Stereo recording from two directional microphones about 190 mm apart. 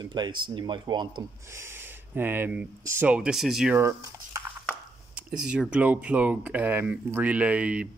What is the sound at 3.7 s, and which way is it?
Speech, 15° right (ahead or behind).